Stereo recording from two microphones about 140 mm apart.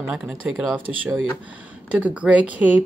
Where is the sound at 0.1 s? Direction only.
5° right (ahead or behind).